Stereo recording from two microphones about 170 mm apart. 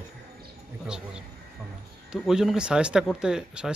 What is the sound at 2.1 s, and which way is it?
Speech, 5° right (ahead or behind).